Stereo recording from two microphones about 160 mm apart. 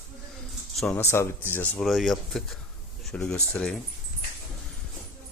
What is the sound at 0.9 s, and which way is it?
Speech, 15° left (ahead or behind).